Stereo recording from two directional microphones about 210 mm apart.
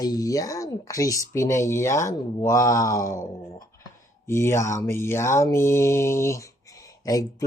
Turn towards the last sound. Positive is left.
turn(degrees=15)  # may be behind; listen again after turning